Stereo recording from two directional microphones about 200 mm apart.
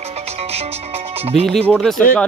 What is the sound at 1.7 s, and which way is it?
Speech, 5° left (ahead or behind).